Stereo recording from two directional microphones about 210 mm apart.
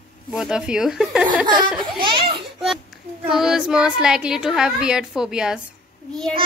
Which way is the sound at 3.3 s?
Centre (ahead or behind).